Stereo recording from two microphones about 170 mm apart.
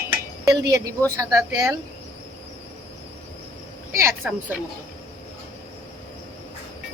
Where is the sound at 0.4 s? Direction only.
20° right (ahead or behind).